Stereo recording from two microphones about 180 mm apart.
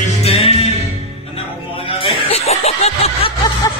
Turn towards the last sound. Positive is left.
turn(degrees=35)  # may be behind; listen again after turning